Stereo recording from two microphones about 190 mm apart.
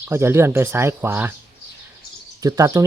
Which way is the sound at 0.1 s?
15° right (ahead or behind).